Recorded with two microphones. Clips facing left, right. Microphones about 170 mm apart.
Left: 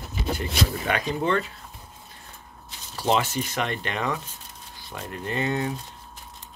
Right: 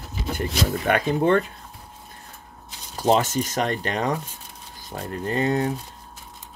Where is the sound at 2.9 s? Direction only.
45° right (ahead or behind).